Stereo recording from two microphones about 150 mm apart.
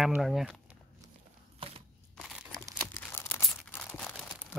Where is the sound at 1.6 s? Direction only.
40° right (ahead or behind).